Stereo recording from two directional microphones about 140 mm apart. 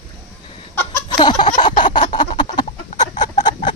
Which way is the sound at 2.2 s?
30° left (ahead or behind).